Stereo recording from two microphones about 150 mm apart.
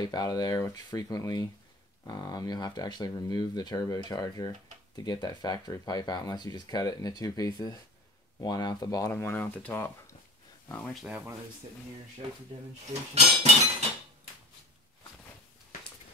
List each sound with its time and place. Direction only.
0.0 s speech: 25° left (ahead or behind); by 11.3 s 10° right (ahead or behind)
13.1 s cutlery: 45° right (ahead or behind)